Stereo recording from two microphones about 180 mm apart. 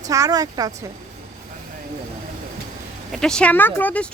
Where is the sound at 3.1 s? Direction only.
5° left (ahead or behind).